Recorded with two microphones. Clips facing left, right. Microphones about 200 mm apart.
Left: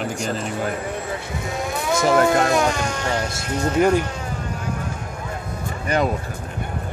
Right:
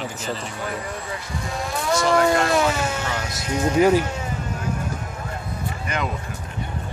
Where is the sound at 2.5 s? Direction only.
5° right (ahead or behind).